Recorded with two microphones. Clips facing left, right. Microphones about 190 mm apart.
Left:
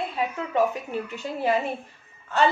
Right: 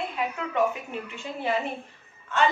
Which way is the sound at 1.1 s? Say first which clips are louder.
Left 4 dB; 40° left (ahead or behind).